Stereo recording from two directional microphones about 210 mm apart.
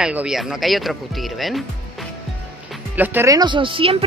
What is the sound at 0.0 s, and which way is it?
Speech, 5° right (ahead or behind).